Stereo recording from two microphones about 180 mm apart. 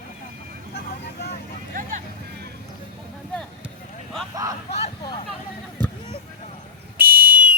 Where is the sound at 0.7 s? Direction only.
60° left (ahead or behind).